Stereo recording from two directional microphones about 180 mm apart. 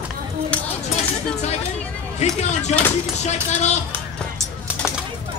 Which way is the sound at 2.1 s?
40° left (ahead or behind).